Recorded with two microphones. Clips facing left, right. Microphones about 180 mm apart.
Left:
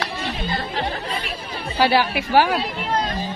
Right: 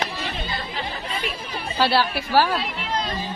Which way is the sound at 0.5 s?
70° left (ahead or behind).